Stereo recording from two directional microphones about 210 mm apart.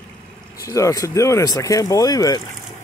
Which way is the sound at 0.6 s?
15° left (ahead or behind).